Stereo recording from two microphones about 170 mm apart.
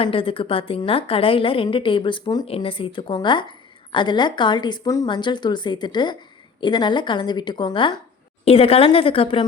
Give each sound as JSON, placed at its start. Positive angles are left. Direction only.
{"t": 0.0, "sound": "a woman's voice", "side_deg": 30}